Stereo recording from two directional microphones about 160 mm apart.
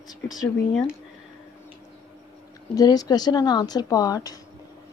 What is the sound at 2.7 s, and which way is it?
Speech, 25° left (ahead or behind).